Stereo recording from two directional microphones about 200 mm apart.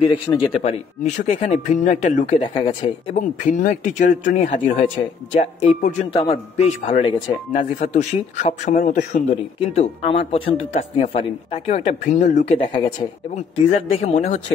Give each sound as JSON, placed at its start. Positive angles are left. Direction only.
{"t": 0.0, "sound": "speech", "side_deg": 25}
{"t": 0.6, "sound": "a man's voice", "side_deg": 35}
{"t": 6.1, "sound": "a man's voice", "side_deg": 25}
{"t": 9.6, "sound": "a man's voice", "side_deg": 30}